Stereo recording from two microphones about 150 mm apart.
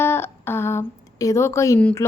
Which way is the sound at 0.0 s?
15° left (ahead or behind).